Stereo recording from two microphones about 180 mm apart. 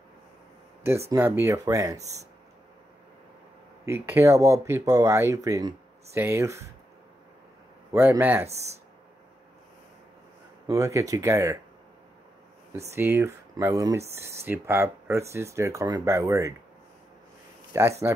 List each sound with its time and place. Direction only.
1.1 s speech: 15° right (ahead or behind)
3.8 s speech: 15° right (ahead or behind)
7.9 s speech: 15° right (ahead or behind)
10.7 s speech: 15° right (ahead or behind)
12.9 s speech: 15° right (ahead or behind)
17.7 s speech: 15° right (ahead or behind)